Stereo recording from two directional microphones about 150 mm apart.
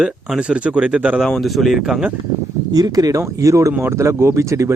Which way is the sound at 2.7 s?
25° right (ahead or behind).